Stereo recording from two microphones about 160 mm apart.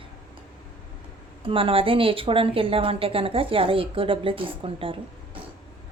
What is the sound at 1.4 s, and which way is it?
A woman's voice, 35° right (ahead or behind).